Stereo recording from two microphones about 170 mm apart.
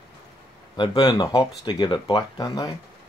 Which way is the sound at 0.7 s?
25° left (ahead or behind).